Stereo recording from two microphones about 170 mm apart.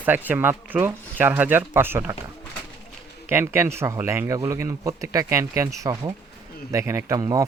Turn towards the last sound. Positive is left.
turn(degrees=-20)  # may be behind; listen again after turning